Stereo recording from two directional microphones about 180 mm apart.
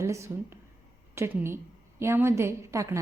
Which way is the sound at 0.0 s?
15° right (ahead or behind).